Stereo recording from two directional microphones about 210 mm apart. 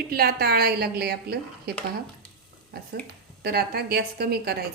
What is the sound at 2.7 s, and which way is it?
A woman's voice, 50° right (ahead or behind).